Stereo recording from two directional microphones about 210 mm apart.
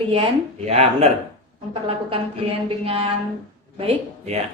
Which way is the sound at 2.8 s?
25° right (ahead or behind).